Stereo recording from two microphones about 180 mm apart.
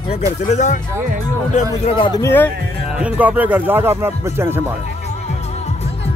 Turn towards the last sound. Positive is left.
turn(degrees=-15)  # may be behind; listen again after turning